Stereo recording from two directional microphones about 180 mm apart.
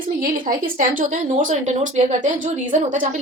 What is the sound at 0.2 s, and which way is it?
Speech, 50° right (ahead or behind).